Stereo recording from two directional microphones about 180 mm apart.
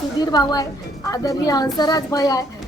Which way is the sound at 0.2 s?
20° left (ahead or behind).